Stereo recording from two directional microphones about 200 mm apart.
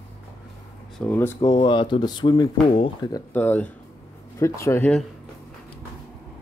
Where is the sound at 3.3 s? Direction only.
10° left (ahead or behind).